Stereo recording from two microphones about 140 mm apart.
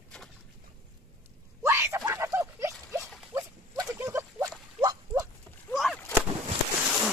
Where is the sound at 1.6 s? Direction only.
20° right (ahead or behind).